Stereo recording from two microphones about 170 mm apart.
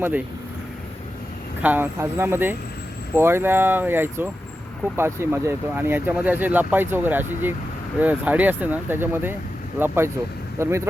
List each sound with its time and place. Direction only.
1.6 s speech: 10° right (ahead or behind)